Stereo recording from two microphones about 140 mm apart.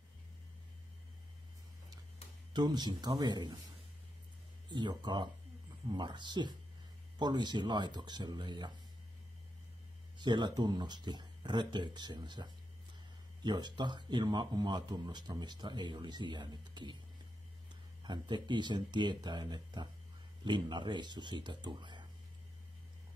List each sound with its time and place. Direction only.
2.5 s speech: 30° right (ahead or behind)
4.6 s speech: 30° right (ahead or behind)
10.1 s speech: 30° right (ahead or behind)
18.0 s speech: 30° right (ahead or behind)